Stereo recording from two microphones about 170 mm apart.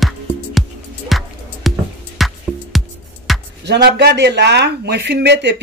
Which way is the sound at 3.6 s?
75° right (ahead or behind).